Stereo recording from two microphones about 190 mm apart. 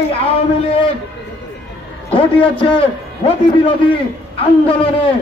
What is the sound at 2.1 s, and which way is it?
A man's voice, 30° left (ahead or behind).